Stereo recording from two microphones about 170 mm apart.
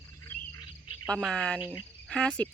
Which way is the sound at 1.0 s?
5° left (ahead or behind).